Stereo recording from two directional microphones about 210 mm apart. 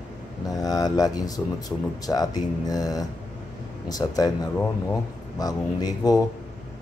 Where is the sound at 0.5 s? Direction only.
15° left (ahead or behind).